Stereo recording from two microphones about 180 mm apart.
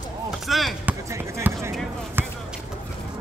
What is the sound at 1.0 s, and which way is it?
Basketball bounce, 15° right (ahead or behind).